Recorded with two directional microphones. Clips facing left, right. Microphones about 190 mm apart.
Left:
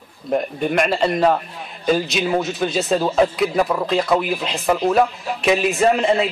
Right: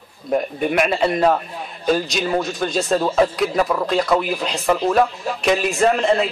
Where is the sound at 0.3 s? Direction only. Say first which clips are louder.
Even; centre (ahead or behind).